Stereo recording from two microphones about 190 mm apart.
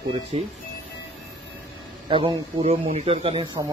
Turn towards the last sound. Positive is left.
turn(degrees=-25)  # may be behind; listen again after turning